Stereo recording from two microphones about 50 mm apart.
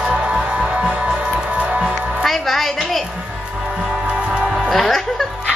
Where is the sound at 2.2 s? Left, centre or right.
Centre.